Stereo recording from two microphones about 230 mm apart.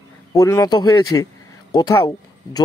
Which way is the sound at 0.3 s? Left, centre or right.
Centre.